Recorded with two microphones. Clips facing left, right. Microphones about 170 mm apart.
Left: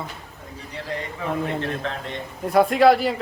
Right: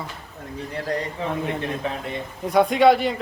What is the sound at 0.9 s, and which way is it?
Speech, 40° right (ahead or behind).